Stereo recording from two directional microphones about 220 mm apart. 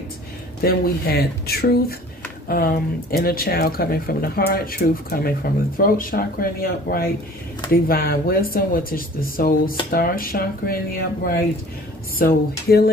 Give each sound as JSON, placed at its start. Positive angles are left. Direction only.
{"t": 0.6, "sound": "speech", "side_deg": 45}